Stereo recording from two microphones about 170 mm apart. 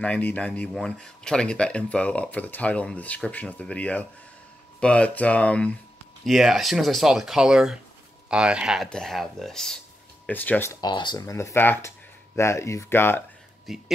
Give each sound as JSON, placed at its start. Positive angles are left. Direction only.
{"t": 0.0, "sound": "speech", "side_deg": 10}
{"t": 13.7, "sound": "speech", "side_deg": 0}